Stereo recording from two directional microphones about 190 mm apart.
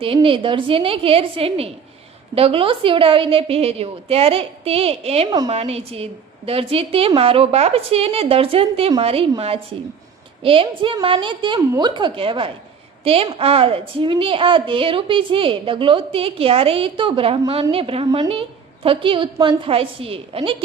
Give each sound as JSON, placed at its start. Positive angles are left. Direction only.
{"t": 0.0, "sound": "a woman's voice", "side_deg": -30}
{"t": 10.4, "sound": "a woman's voice", "side_deg": -30}